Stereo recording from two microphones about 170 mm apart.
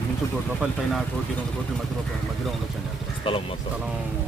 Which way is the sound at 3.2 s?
30° left (ahead or behind).